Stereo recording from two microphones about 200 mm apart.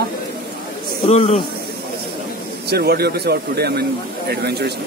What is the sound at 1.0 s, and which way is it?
Speech, 30° left (ahead or behind).